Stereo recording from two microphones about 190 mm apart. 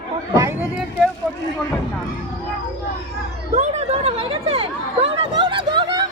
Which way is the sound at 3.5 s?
35° right (ahead or behind).